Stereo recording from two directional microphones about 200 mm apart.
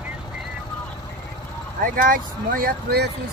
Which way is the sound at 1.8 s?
45° right (ahead or behind).